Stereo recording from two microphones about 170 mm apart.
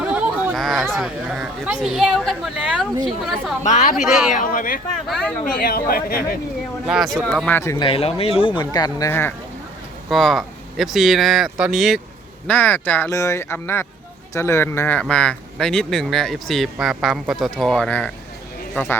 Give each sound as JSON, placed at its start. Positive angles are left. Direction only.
{"t": 0.0, "sound": "a sound", "side_deg": -5}
{"t": 1.8, "sound": "speech", "side_deg": 0}
{"t": 3.6, "sound": "speech", "side_deg": 45}
{"t": 4.0, "sound": "speech", "side_deg": -5}
{"t": 4.3, "sound": "speech", "side_deg": 50}
{"t": 5.0, "sound": "speech", "side_deg": 0}
{"t": 5.5, "sound": "speech", "side_deg": 60}
{"t": 6.8, "sound": "speech", "side_deg": 0}
{"t": 7.9, "sound": "speech", "side_deg": 35}
{"t": 10.1, "sound": "speech", "side_deg": 0}
{"t": 12.5, "sound": "speech", "side_deg": 10}